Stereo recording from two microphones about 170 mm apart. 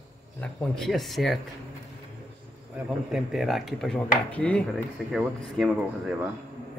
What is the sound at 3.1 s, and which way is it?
Speech, centre (ahead or behind).